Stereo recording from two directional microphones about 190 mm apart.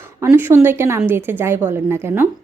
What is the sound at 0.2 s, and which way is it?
A woman's voice, 10° right (ahead or behind).